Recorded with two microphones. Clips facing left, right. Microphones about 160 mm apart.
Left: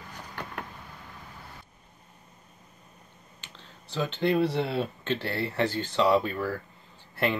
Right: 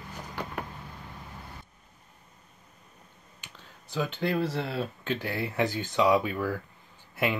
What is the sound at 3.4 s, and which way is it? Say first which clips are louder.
Speech: even; 10° right (ahead or behind).